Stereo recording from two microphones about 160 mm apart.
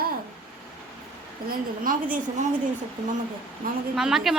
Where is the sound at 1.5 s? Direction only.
60° right (ahead or behind).